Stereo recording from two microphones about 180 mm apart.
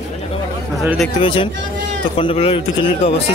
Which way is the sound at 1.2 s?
30° left (ahead or behind).